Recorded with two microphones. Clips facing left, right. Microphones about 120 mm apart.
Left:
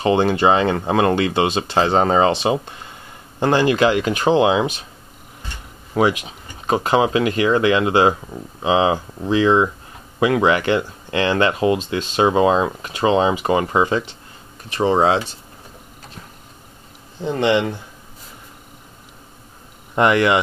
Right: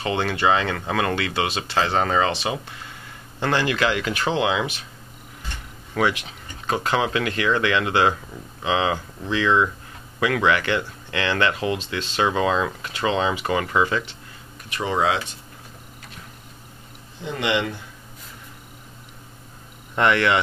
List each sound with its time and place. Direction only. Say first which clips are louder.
0.0 s speech: left 7 dB; 25° left (ahead or behind)
5.9 s speech: left 5 dB; 20° left (ahead or behind)
17.2 s speech: left 6 dB; 35° left (ahead or behind)
20.0 s speech: left 4 dB; 20° left (ahead or behind)